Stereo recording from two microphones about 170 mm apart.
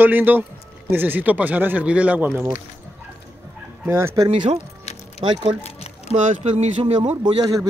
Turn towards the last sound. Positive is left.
turn(degrees=-25)  # may be behind; listen again after turning